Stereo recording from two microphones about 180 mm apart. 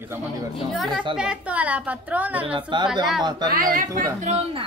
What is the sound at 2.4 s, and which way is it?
A woman's voice, 25° right (ahead or behind).